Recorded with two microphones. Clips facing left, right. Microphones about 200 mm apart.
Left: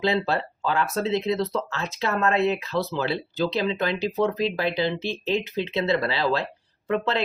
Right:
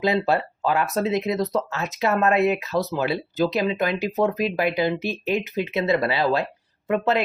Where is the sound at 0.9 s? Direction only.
20° right (ahead or behind).